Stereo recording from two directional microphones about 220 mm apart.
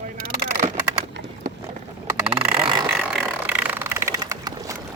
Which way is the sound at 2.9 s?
Centre (ahead or behind).